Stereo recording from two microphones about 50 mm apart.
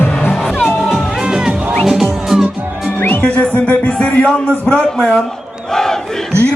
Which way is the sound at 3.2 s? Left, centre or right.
Left.